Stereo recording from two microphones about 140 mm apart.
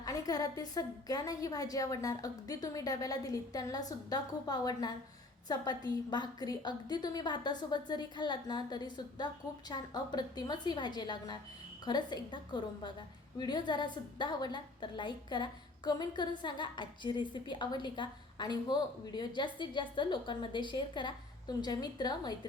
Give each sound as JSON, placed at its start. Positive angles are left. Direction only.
{"t": 0.0, "sound": "a woman's voice", "side_deg": 25}